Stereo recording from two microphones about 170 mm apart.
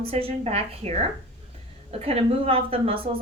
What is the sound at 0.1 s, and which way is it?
A woman's voice, 35° right (ahead or behind).